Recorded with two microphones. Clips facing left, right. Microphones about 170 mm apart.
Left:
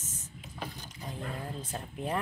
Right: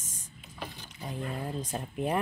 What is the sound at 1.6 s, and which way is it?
Speech, 15° right (ahead or behind).